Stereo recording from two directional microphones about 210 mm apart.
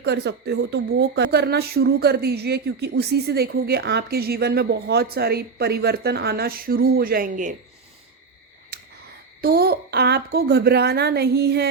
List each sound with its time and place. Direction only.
0.0 s speech: 55° right (ahead or behind); by 7.5 s 40° right (ahead or behind)
9.4 s speech: 45° right (ahead or behind)